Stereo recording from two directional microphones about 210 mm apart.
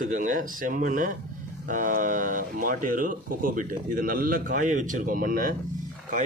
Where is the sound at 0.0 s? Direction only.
40° right (ahead or behind).